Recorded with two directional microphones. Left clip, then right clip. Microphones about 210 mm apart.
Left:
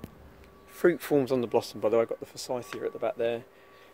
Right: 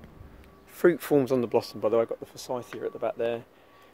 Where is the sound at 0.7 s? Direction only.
15° right (ahead or behind).